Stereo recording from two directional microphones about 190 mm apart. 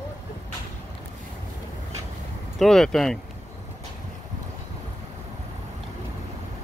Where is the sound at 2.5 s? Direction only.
Centre (ahead or behind).